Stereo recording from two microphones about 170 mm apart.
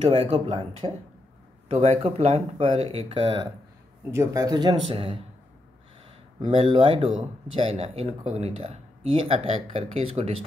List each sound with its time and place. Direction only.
0.3 s speech: 30° right (ahead or behind)
4.1 s speech: 20° right (ahead or behind)
6.4 s speech: 35° right (ahead or behind)